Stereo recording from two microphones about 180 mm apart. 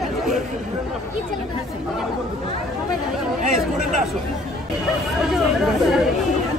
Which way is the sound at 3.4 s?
45° right (ahead or behind).